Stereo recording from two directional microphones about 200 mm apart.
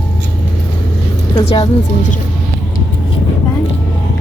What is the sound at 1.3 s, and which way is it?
Speech, 25° left (ahead or behind).